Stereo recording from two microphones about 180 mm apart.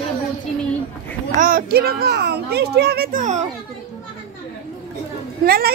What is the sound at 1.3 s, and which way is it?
Speech, 50° right (ahead or behind).